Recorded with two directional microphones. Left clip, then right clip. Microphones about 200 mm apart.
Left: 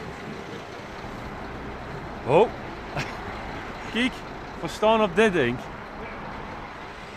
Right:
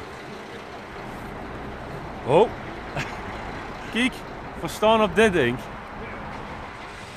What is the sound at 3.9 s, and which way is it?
Speech, 15° right (ahead or behind).